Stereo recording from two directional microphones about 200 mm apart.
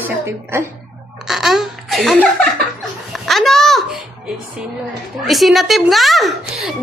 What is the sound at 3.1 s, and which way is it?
Speech, centre (ahead or behind).